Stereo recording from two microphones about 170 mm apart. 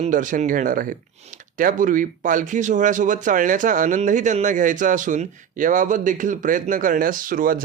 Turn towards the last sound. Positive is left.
turn(degrees=-55)  # may be behind; listen again after turning